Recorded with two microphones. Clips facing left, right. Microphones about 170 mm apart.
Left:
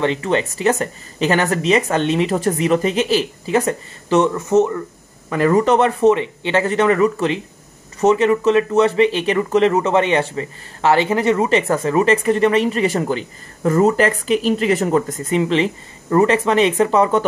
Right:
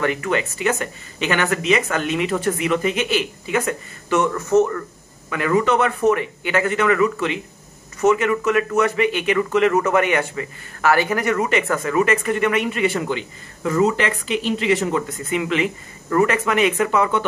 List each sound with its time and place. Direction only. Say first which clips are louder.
0.0 s speech: left 3 dB; 25° left (ahead or behind)
4.3 s speech: left 1 dB; 20° left (ahead or behind)
5.3 s speech: left 4 dB; 40° left (ahead or behind)